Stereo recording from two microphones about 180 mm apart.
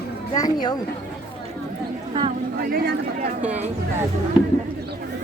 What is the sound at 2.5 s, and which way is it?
Speech, 55° right (ahead or behind).